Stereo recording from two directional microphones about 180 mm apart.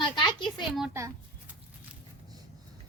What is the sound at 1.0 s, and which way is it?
Speech, 15° right (ahead or behind).